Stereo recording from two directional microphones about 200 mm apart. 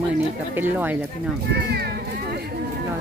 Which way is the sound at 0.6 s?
10° right (ahead or behind).